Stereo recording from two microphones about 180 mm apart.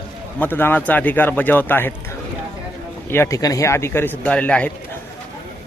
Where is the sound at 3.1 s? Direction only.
15° left (ahead or behind).